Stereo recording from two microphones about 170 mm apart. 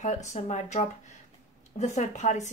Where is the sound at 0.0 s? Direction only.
45° left (ahead or behind).